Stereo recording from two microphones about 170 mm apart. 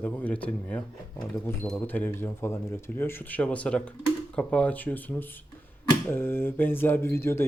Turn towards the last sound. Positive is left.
turn(degrees=15)  # may be behind; listen again after turning